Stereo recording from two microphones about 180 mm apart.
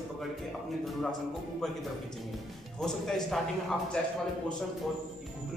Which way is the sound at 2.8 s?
5° left (ahead or behind).